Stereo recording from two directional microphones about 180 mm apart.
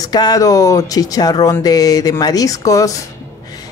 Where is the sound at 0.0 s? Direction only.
20° left (ahead or behind).